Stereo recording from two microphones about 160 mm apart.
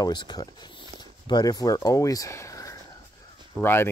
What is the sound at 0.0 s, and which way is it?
Speech, 30° left (ahead or behind).